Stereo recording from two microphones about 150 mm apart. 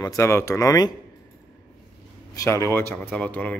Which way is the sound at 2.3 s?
20° left (ahead or behind).